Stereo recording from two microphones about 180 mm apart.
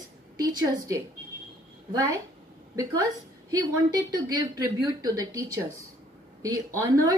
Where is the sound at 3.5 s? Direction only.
20° right (ahead or behind).